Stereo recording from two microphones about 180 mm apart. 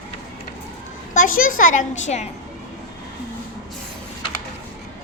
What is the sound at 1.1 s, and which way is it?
A woman's voice, 50° left (ahead or behind).